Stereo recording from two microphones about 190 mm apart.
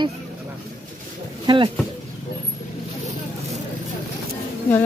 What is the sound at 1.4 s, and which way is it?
Speech, 25° right (ahead or behind).